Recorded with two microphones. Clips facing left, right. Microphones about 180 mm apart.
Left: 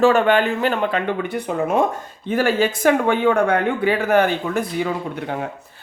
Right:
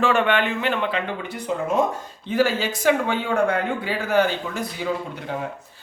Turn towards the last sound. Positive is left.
turn(degrees=55)  # may be behind; listen again after turning